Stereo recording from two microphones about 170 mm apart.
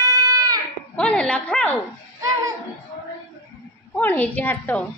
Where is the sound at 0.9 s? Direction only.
5° left (ahead or behind).